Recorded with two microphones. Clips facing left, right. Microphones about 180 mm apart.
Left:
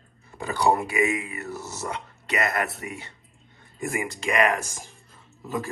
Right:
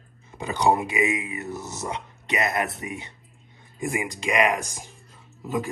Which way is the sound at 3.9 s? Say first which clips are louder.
Even; 15° right (ahead or behind).